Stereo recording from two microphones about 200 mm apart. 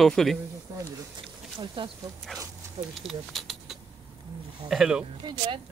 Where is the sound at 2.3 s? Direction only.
Centre (ahead or behind).